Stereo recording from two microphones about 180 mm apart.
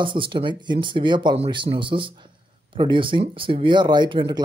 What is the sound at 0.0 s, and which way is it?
Speech, 25° right (ahead or behind).